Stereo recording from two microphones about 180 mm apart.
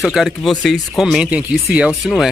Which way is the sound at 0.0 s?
Centre (ahead or behind).